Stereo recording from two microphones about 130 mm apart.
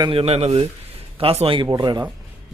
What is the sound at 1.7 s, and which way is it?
Speech, 30° right (ahead or behind).